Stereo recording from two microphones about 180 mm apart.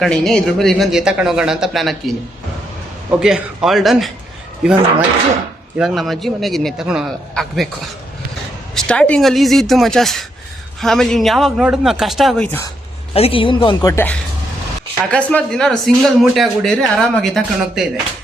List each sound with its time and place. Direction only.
0.0 s speech: 5° left (ahead or behind)
3.1 s speech: 5° right (ahead or behind)
5.7 s speech: centre (ahead or behind)
8.7 s speech: 5° left (ahead or behind)
12.5 s speech: 10° left (ahead or behind)
13.1 s speech: 30° left (ahead or behind)
13.9 s speech: 10° left (ahead or behind)